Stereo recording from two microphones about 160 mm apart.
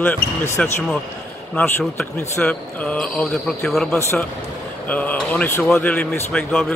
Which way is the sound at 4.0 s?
15° left (ahead or behind).